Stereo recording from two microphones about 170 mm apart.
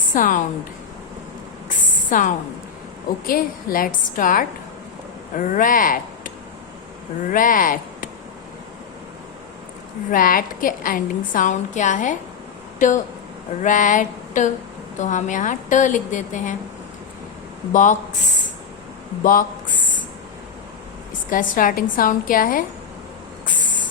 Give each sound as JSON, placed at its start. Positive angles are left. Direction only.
{"t": 0.1, "sound": "a woman's voice", "side_deg": 50}
{"t": 2.0, "sound": "a woman's voice", "side_deg": 50}
{"t": 10.1, "sound": "a woman's voice", "side_deg": 55}
{"t": 17.7, "sound": "a woman's voice", "side_deg": 50}
{"t": 19.2, "sound": "a sound", "side_deg": 50}
{"t": 21.2, "sound": "a woman's voice", "side_deg": 55}